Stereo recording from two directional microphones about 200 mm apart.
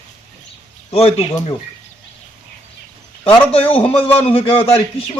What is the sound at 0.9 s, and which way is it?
Speech, 30° left (ahead or behind).